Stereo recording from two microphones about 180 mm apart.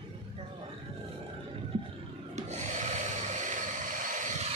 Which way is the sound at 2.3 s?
40° right (ahead or behind).